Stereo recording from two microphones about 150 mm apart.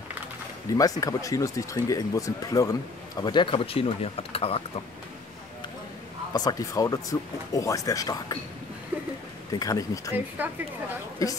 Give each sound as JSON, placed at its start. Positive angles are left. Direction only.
{"t": 0.7, "sound": "speech", "side_deg": 25}
{"t": 6.3, "sound": "speech", "side_deg": 25}
{"t": 8.9, "sound": "speech", "side_deg": -10}
{"t": 9.5, "sound": "speech", "side_deg": 25}
{"t": 10.4, "sound": "speech", "side_deg": -10}